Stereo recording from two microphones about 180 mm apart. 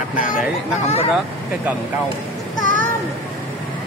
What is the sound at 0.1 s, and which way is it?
Speech, 50° left (ahead or behind).